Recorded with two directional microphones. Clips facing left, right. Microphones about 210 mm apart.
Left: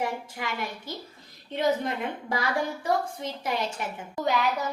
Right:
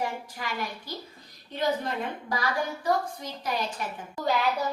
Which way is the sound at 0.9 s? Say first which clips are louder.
Left 1 dB; 25° left (ahead or behind).